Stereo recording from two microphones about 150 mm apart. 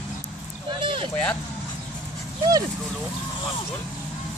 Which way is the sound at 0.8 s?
35° right (ahead or behind).